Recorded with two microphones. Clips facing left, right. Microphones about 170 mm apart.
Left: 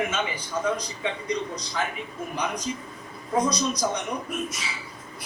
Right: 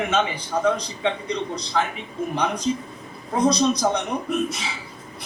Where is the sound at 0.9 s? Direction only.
30° right (ahead or behind).